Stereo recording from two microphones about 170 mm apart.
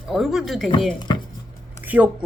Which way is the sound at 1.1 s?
25° left (ahead or behind).